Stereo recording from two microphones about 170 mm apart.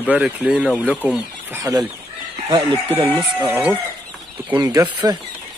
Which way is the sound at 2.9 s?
10° right (ahead or behind).